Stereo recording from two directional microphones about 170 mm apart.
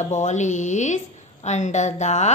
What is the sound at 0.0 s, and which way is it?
A woman's voice, 45° left (ahead or behind).